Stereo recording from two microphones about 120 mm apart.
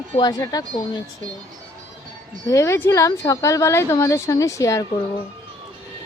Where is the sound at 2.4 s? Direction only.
25° left (ahead or behind).